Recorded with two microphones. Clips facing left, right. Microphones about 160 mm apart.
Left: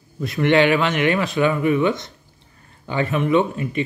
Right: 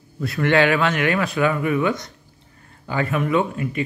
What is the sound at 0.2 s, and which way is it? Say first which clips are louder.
Speech: left 2 dB; 20° left (ahead or behind).